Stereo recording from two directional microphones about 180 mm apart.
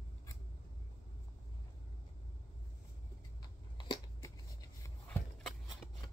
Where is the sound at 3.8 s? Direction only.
20° left (ahead or behind).